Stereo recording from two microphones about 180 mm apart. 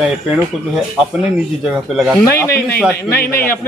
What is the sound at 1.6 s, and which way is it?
Speech, centre (ahead or behind).